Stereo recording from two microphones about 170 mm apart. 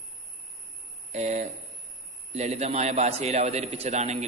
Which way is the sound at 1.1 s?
40° right (ahead or behind).